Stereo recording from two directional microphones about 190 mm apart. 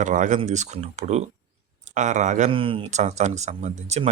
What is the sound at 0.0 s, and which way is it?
Speech, 40° right (ahead or behind).